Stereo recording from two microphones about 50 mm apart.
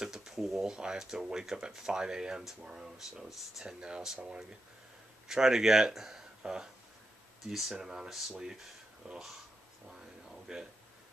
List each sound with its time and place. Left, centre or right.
0.0 s a sound: centre
0.7 s speech: centre
10.5 s speech: centre